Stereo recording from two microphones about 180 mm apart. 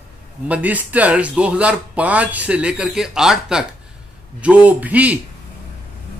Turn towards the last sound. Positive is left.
turn(degrees=-10)  # may be behind; listen again after turning